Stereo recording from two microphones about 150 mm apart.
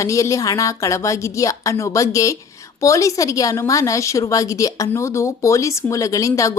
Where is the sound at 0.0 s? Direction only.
20° left (ahead or behind).